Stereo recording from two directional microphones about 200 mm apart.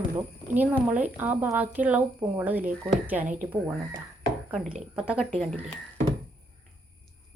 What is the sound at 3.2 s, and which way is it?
Speech, 40° right (ahead or behind).